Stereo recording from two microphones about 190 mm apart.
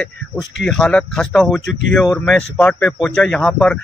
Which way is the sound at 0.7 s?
5° left (ahead or behind).